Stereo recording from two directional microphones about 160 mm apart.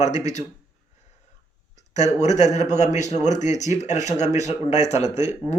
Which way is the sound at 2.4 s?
45° left (ahead or behind).